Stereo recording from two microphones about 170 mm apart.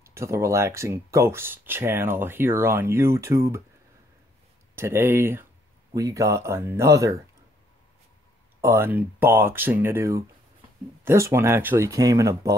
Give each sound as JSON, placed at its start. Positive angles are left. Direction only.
{"t": 0.0, "sound": "speech", "side_deg": -15}
{"t": 4.7, "sound": "speech", "side_deg": -15}
{"t": 8.5, "sound": "speech", "side_deg": -15}